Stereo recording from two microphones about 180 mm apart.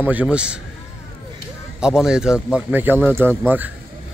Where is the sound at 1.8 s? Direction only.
5° right (ahead or behind).